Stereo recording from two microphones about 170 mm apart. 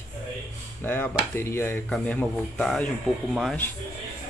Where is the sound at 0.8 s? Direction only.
10° left (ahead or behind).